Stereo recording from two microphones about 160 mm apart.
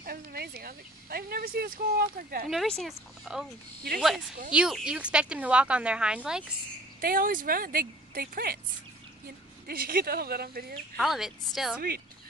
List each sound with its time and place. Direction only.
0.0 s speech: 70° right (ahead or behind)
2.5 s speech: centre (ahead or behind)
4.5 s speech: 5° right (ahead or behind)
7.0 s speech: 60° right (ahead or behind)
9.7 s speech: 65° right (ahead or behind)
11.0 s speech: centre (ahead or behind)